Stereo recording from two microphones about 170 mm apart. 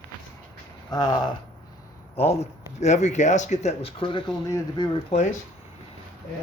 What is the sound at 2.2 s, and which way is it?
Speech, 35° left (ahead or behind).